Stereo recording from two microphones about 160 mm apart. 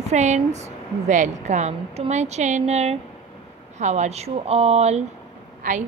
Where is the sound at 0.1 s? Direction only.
45° right (ahead or behind).